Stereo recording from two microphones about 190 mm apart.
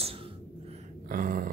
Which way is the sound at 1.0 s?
45° right (ahead or behind).